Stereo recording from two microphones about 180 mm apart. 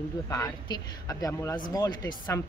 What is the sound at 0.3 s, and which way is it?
A woman's voice, 20° left (ahead or behind).